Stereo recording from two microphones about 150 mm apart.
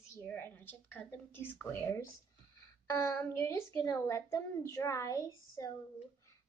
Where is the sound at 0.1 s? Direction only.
15° left (ahead or behind).